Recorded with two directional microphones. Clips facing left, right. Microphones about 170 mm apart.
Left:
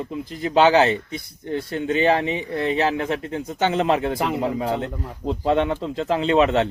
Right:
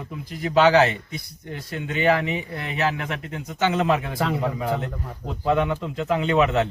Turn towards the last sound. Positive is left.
turn(degrees=30)  # may be behind; listen again after turning